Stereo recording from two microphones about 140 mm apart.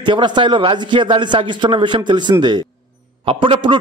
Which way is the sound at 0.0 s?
35° right (ahead or behind).